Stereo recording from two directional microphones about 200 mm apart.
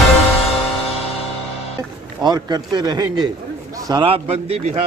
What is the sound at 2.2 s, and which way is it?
A man's voice, 20° right (ahead or behind).